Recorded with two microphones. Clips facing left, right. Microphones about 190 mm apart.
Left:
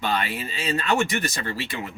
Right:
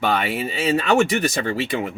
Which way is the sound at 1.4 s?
55° right (ahead or behind).